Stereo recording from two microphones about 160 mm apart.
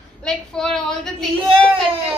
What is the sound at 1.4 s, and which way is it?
Speech, 35° right (ahead or behind).